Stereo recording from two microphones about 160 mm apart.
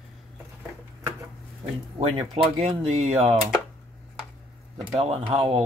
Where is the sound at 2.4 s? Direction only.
35° right (ahead or behind).